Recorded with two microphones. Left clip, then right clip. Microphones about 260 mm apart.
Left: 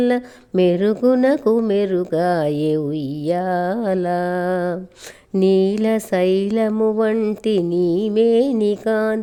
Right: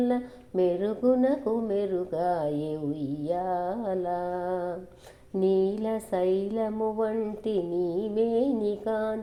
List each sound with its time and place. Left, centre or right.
0.0 s speech: left